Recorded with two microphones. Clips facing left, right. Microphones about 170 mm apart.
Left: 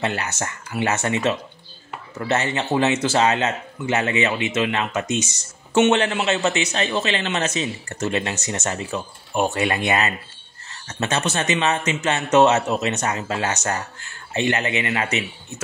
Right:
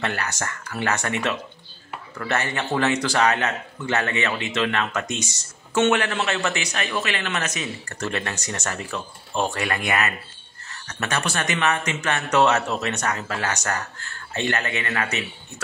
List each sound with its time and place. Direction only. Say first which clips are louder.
0.0 s a man's voice: left 2 dB; 20° left (ahead or behind)